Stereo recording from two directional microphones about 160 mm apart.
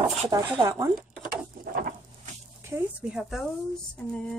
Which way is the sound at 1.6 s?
60° right (ahead or behind).